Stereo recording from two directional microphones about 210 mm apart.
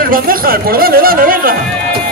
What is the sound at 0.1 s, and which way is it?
Speech, 45° right (ahead or behind).